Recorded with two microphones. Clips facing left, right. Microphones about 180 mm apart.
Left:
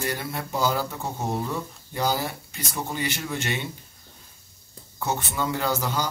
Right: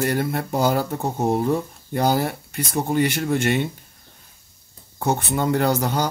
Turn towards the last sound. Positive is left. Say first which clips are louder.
# right 6 dB
turn(degrees=-55)  # may be behind; listen again after turning